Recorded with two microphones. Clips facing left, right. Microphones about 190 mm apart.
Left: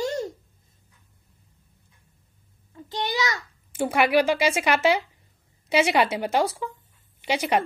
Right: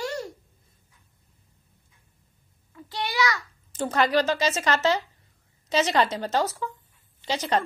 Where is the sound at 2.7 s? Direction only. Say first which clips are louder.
Left 3 dB; 20° left (ahead or behind).